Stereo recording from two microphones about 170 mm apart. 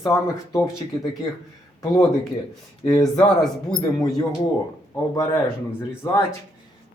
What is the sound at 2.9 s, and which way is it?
Speech, 25° left (ahead or behind).